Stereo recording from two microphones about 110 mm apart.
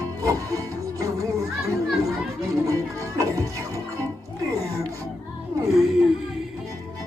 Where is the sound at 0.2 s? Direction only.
30° right (ahead or behind).